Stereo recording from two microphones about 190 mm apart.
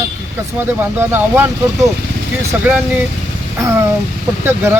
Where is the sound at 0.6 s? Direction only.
10° right (ahead or behind).